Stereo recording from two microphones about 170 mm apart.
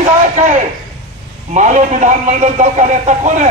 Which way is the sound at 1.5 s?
45° right (ahead or behind).